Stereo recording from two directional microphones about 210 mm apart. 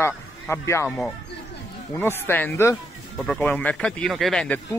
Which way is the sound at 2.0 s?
10° left (ahead or behind).